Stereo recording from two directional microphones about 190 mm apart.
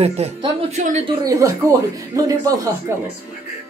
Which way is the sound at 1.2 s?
15° right (ahead or behind).